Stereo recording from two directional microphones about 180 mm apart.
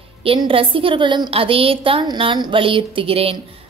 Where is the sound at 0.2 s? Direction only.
30° right (ahead or behind).